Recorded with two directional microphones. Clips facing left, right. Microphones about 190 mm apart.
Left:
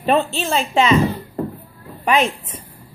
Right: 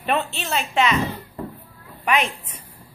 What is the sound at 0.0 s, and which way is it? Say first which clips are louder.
Speech: left 6 dB; 30° left (ahead or behind).